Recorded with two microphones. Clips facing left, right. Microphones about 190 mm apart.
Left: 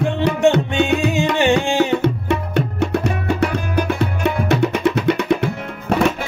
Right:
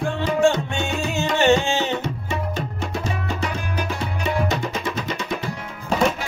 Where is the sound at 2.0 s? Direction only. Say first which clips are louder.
Left 8 dB; 65° left (ahead or behind).